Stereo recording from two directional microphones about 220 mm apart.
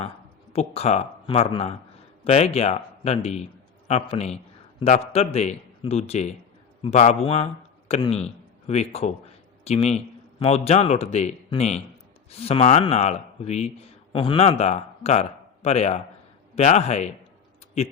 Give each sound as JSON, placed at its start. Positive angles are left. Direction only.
{"t": 0.5, "sound": "a man's voice", "side_deg": 30}